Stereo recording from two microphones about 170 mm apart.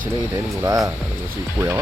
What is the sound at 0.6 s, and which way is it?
Speech, 20° right (ahead or behind).